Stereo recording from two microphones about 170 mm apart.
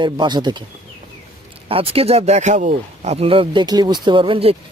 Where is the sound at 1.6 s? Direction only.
35° right (ahead or behind).